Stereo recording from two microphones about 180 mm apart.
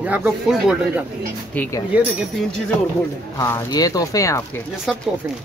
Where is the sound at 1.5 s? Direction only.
10° left (ahead or behind).